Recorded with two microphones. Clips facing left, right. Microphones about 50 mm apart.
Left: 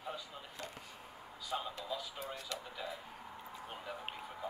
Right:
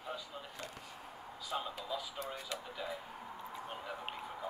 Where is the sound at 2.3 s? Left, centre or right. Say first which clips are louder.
Right 1 dB; centre.